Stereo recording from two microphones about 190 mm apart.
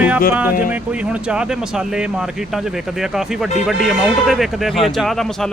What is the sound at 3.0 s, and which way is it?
Speech, centre (ahead or behind).